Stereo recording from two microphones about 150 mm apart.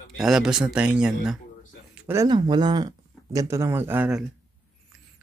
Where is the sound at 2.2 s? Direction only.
30° right (ahead or behind); by 4.2 s 10° right (ahead or behind).